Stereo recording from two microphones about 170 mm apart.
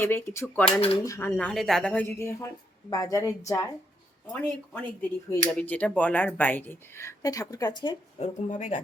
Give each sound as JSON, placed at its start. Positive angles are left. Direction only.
{"t": 0.0, "sound": "a woman's voice", "side_deg": 15}
{"t": 8.2, "sound": "speech", "side_deg": 45}